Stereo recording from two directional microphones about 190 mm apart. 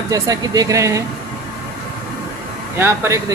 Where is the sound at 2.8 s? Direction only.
15° right (ahead or behind).